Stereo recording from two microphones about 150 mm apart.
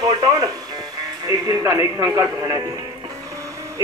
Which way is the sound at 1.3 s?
25° right (ahead or behind).